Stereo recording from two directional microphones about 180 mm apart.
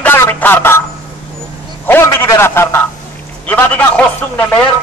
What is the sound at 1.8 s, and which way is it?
Speech, 15° left (ahead or behind).